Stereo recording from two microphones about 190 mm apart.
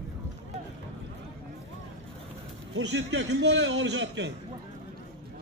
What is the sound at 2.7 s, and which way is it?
A man's voice, 75° right (ahead or behind).